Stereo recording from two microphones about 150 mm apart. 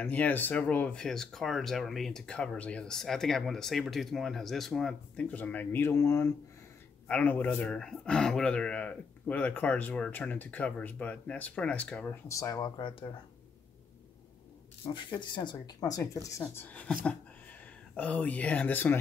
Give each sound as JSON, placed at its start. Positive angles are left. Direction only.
{"t": 0.0, "sound": "speech", "side_deg": 10}
{"t": 7.1, "sound": "speech", "side_deg": 10}
{"t": 12.3, "sound": "speech", "side_deg": 20}
{"t": 14.9, "sound": "speech", "side_deg": 30}